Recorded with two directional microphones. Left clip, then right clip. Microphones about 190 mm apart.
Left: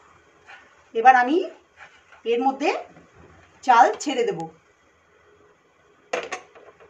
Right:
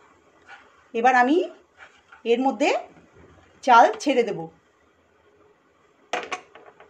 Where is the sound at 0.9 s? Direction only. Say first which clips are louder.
Left 3 dB; 40° right (ahead or behind).